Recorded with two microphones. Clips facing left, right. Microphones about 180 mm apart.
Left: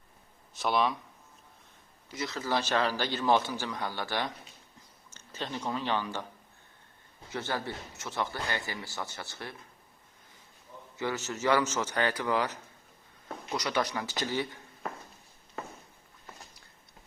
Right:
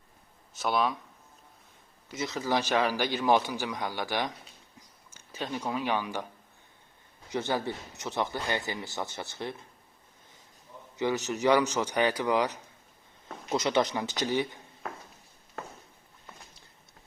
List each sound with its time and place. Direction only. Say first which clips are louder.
0.5 s speech: even; centre (ahead or behind)
2.1 s a man's voice: right 2 dB; 20° right (ahead or behind)
7.3 s speech: right 4 dB; 20° right (ahead or behind)
10.9 s a man's voice: right 5 dB; 20° right (ahead or behind)